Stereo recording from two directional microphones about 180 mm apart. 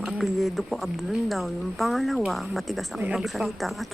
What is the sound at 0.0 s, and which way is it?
A woman's voice, centre (ahead or behind).